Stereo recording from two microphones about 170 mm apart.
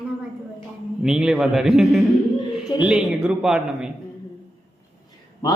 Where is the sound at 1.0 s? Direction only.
5° right (ahead or behind).